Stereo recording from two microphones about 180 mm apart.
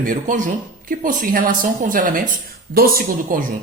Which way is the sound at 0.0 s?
45° right (ahead or behind).